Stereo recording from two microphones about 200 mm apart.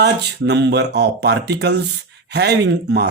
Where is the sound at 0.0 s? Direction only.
55° right (ahead or behind).